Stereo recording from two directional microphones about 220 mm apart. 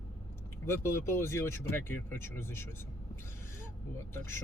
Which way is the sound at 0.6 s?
10° left (ahead or behind).